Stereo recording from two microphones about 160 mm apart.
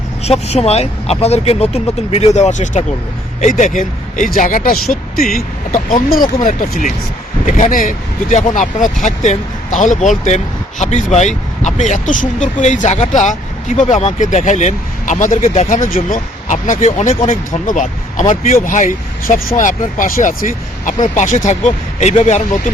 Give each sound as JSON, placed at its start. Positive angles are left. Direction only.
{"t": 0.3, "sound": "speech", "side_deg": 40}